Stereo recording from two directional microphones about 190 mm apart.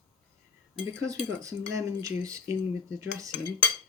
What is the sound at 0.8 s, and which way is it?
Speech, 15° right (ahead or behind).